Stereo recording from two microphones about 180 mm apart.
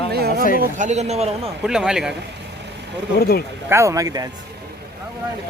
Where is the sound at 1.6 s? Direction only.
5° right (ahead or behind).